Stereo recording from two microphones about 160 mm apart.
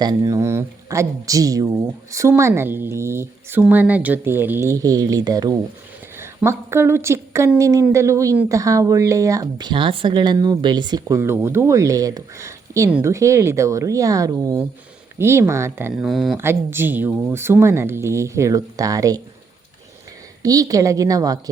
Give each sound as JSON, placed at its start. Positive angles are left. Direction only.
{"t": 0.0, "sound": "speech", "side_deg": -20}
{"t": 16.0, "sound": "speech", "side_deg": 0}
{"t": 16.4, "sound": "speech", "side_deg": -15}
{"t": 20.4, "sound": "speech", "side_deg": -20}